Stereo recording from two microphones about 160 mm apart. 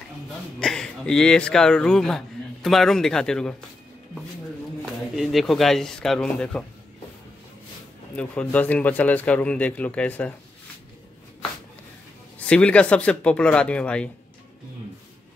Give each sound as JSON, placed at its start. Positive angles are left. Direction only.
{"t": 0.6, "sound": "speech", "side_deg": 5}
{"t": 5.1, "sound": "speech", "side_deg": 0}
{"t": 8.2, "sound": "speech", "side_deg": 10}
{"t": 12.4, "sound": "speech", "side_deg": 5}